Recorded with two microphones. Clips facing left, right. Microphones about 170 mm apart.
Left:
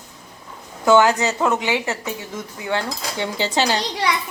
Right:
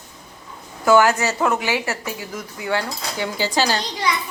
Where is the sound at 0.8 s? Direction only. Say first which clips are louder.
Even; 20° left (ahead or behind).